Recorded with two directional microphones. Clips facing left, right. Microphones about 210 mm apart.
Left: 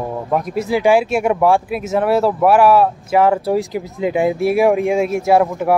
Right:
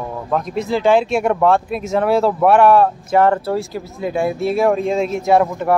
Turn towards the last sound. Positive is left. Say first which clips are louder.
# left 1 dB
turn(degrees=5)  # may be behind; listen again after turning